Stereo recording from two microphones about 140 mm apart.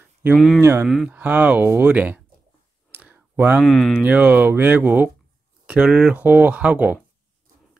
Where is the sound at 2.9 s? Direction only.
10° right (ahead or behind).